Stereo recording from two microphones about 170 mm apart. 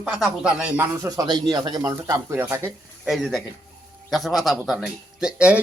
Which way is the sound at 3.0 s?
Centre (ahead or behind).